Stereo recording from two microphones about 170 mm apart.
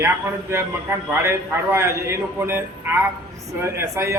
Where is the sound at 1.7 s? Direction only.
15° right (ahead or behind).